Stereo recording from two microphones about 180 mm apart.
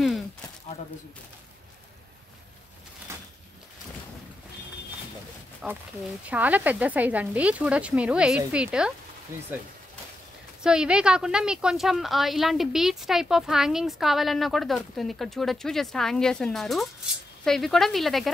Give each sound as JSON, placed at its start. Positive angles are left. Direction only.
{"t": 3.1, "sound": "a sound", "side_deg": -15}
{"t": 5.6, "sound": "speech", "side_deg": -5}
{"t": 10.6, "sound": "a woman's voice", "side_deg": -5}